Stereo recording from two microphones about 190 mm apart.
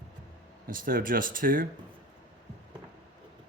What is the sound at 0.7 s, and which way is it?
Speech, 45° right (ahead or behind).